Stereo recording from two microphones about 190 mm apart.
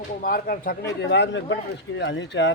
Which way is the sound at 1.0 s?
70° left (ahead or behind).